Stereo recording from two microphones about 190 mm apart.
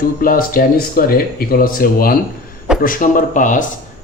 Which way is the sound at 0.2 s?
45° left (ahead or behind).